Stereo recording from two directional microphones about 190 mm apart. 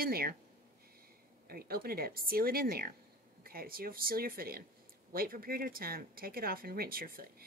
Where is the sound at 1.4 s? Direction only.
55° right (ahead or behind).